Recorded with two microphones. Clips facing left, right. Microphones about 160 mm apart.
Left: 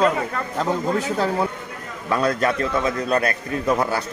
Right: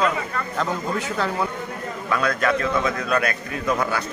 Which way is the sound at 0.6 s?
35° left (ahead or behind).